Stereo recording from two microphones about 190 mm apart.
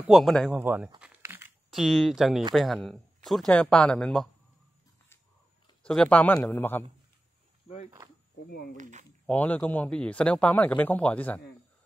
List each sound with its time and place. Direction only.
0.0 s speech: centre (ahead or behind)
0.6 s crumpling: 10° right (ahead or behind)
1.7 s speech: centre (ahead or behind)
5.9 s speech: 5° left (ahead or behind)
7.6 s a sound: 35° left (ahead or behind)
8.5 s speech: 55° left (ahead or behind)
8.7 s speech: 40° right (ahead or behind)
9.2 s speech: 5° left (ahead or behind)